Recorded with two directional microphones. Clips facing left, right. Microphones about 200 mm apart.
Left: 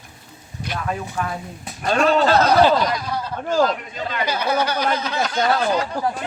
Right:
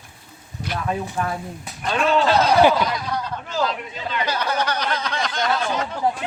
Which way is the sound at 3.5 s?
45° left (ahead or behind).